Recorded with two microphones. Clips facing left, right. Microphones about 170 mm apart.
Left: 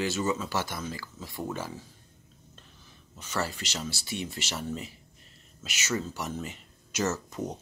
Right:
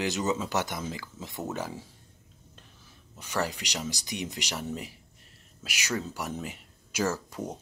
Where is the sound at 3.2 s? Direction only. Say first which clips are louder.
Right 2 dB; 15° right (ahead or behind).